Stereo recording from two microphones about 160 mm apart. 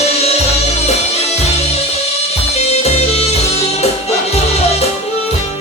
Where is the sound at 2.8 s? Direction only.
40° left (ahead or behind).